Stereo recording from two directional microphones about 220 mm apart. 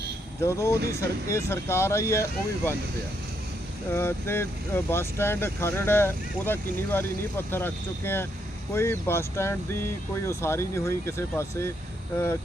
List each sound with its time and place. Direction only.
0.4 s speech: 15° left (ahead or behind)
3.9 s speech: 10° left (ahead or behind)